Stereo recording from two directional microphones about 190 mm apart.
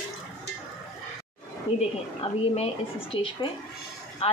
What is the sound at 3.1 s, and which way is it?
Speech, 30° left (ahead or behind).